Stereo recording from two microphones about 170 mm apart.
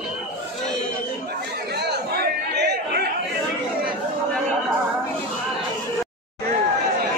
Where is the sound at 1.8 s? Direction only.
75° right (ahead or behind).